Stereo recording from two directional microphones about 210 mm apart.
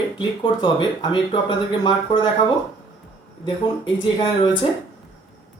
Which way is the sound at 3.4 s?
20° left (ahead or behind).